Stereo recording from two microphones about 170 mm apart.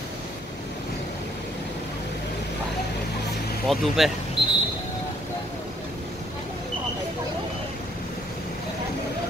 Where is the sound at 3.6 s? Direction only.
Centre (ahead or behind).